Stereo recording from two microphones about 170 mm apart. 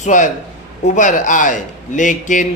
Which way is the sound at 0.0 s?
45° left (ahead or behind).